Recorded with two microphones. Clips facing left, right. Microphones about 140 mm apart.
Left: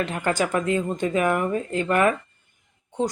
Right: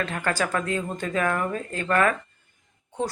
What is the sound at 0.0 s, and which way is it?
Speech, 20° left (ahead or behind).